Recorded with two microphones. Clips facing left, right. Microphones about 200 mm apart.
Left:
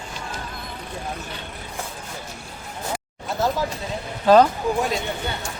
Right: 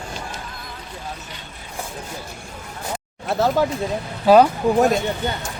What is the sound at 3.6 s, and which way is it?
Speech, 60° right (ahead or behind).